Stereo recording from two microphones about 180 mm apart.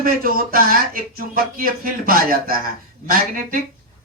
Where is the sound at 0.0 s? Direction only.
55° right (ahead or behind).